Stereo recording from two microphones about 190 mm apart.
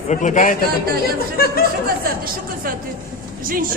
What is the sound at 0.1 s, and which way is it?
Speech, 40° left (ahead or behind).